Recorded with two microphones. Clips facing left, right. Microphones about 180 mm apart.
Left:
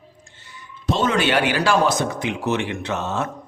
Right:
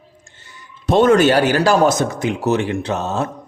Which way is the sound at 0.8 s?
50° right (ahead or behind).